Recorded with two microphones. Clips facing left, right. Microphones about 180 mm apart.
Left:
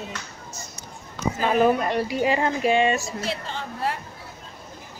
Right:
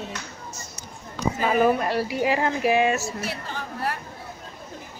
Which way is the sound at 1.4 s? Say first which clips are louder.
Left 1 dB; centre (ahead or behind).